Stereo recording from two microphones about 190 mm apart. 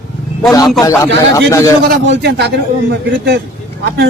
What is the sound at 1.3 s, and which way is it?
Speech, 15° left (ahead or behind).